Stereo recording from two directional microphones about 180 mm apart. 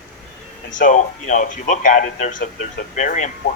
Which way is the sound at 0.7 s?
45° left (ahead or behind).